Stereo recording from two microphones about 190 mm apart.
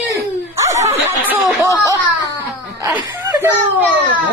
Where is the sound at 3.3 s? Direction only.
15° right (ahead or behind).